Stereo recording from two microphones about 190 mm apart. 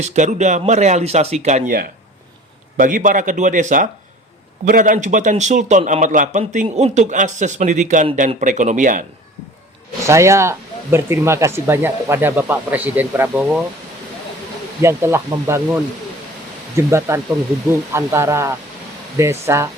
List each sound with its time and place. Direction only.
0.0 s a man's voice: 35° right (ahead or behind)
10.1 s speech: 15° right (ahead or behind)
14.8 s speech: 15° right (ahead or behind)